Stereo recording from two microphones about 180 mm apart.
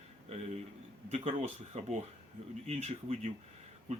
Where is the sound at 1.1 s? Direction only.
35° right (ahead or behind).